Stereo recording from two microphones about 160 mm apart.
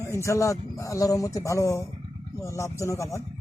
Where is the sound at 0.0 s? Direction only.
20° left (ahead or behind).